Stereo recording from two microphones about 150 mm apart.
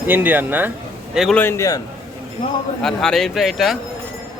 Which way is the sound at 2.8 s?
5° left (ahead or behind).